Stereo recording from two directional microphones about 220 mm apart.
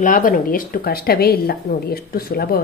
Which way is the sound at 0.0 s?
40° left (ahead or behind).